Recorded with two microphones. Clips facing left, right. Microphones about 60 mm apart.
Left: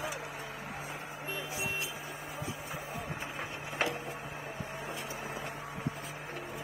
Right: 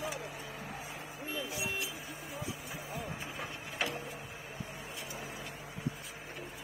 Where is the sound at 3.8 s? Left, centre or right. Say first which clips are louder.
Left 3 dB; left.